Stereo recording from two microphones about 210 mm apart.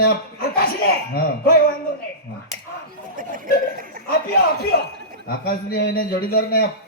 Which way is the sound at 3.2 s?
40° right (ahead or behind).